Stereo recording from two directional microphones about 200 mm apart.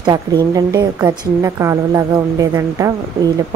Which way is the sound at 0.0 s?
20° right (ahead or behind).